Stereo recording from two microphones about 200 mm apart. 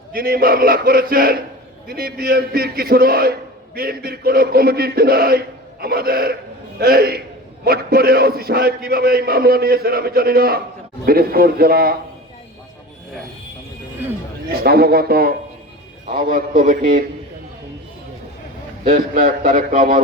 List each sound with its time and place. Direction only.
0.1 s a man's voice: 50° right (ahead or behind)
14.5 s a man's voice: 50° right (ahead or behind)
18.9 s a man's voice: 45° right (ahead or behind)